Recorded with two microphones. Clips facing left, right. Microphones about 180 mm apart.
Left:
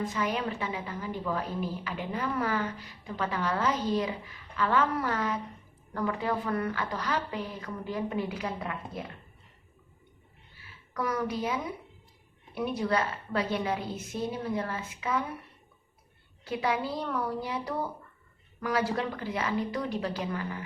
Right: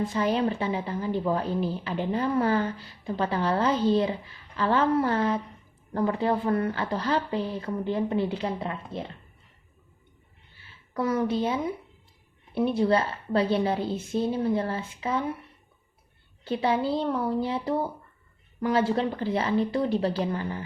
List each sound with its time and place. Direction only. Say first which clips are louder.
0.0 s a woman's voice: right 6 dB; 30° right (ahead or behind)
10.6 s a woman's voice: right 5 dB; 25° right (ahead or behind)
16.4 s a woman's voice: right 5 dB; 30° right (ahead or behind)